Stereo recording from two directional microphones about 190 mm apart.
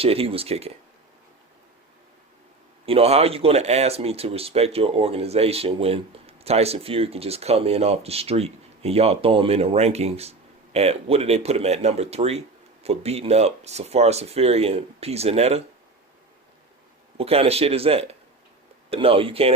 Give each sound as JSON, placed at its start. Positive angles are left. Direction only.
{"t": 0.0, "sound": "speech", "side_deg": -30}
{"t": 2.8, "sound": "speech", "side_deg": -30}
{"t": 17.2, "sound": "speech", "side_deg": -30}